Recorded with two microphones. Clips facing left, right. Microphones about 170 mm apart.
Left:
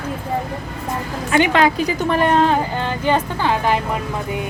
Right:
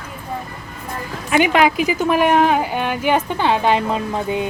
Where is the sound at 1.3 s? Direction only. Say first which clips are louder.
Even; 15° right (ahead or behind).